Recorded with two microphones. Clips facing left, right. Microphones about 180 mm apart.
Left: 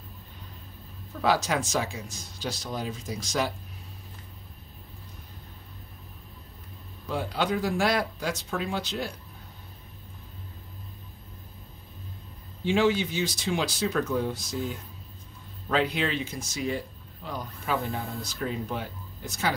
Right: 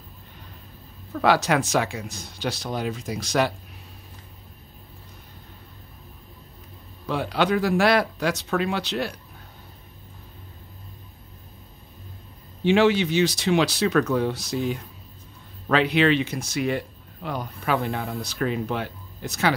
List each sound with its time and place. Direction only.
1.2 s speech: 70° right (ahead or behind)
7.1 s speech: 75° right (ahead or behind)
12.6 s speech: 75° right (ahead or behind)